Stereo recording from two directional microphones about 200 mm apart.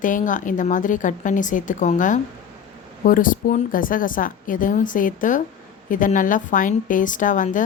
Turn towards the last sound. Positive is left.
turn(degrees=40)  # may be behind; listen again after turning